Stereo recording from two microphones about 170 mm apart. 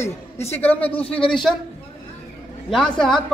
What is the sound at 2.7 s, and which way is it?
Speech, 5° left (ahead or behind).